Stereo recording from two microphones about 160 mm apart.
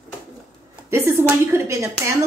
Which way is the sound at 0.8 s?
15° right (ahead or behind).